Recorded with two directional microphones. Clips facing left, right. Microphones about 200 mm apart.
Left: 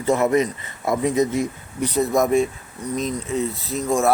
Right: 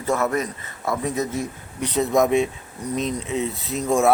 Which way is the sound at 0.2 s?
15° left (ahead or behind).